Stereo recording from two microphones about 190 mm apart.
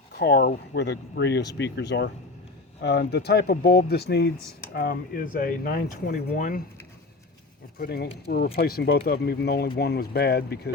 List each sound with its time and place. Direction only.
0.2 s speech: 55° left (ahead or behind)
7.8 s speech: 60° left (ahead or behind)